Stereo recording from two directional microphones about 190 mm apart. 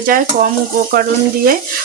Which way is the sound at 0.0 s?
45° right (ahead or behind).